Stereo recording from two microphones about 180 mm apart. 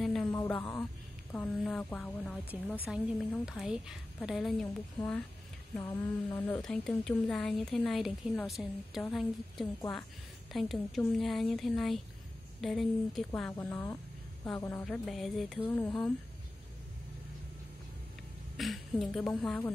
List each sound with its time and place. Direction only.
0.0 s a sound: centre (ahead or behind)
0.3 s a sound: 15° left (ahead or behind)
1.3 s speech: 5° left (ahead or behind)
2.9 s a woman's voice: 5° right (ahead or behind)
5.0 s speech: 30° left (ahead or behind)
5.8 s speech: 15° left (ahead or behind)
6.6 s a woman's voice: 5° left (ahead or behind)
13.3 s a woman's voice: 10° left (ahead or behind)
18.6 s a woman's voice: centre (ahead or behind)